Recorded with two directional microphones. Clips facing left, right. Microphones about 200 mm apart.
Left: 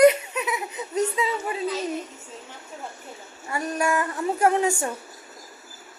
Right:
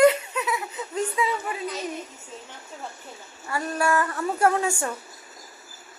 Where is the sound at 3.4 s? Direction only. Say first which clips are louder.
Even; 20° left (ahead or behind).